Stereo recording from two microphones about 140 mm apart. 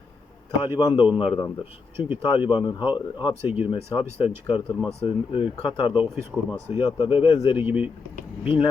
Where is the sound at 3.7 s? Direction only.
40° left (ahead or behind).